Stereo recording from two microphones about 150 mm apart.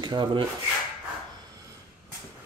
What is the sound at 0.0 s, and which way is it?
Speech, 30° right (ahead or behind).